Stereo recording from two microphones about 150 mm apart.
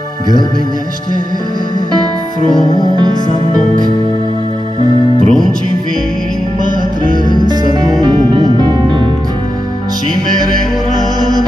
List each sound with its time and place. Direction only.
5.3 s music: 5° left (ahead or behind)
6.6 s music: 30° right (ahead or behind)
10.3 s music: 25° right (ahead or behind)